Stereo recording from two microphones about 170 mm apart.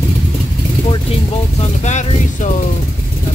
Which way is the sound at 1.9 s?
45° left (ahead or behind).